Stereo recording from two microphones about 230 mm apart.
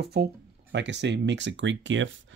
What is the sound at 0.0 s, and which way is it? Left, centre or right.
Speech, right.